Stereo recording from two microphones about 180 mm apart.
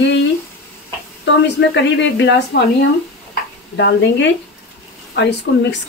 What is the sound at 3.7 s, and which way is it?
Speech, 80° left.